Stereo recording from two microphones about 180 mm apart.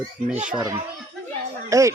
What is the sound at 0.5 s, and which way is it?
A child's voice, 25° right (ahead or behind).